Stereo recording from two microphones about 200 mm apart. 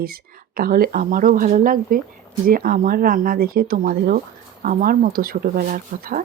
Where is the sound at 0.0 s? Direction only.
50° right (ahead or behind).